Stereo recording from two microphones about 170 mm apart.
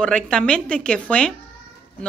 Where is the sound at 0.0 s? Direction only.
5° left (ahead or behind).